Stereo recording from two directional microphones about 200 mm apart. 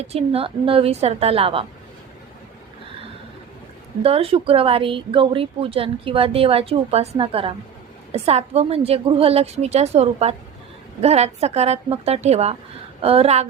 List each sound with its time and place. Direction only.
0.0 s a woman's voice: 30° right (ahead or behind)
4.0 s a woman's voice: 30° right (ahead or behind)